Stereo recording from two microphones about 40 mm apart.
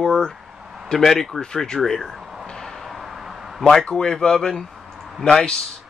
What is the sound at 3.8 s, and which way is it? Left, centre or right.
Speech, centre.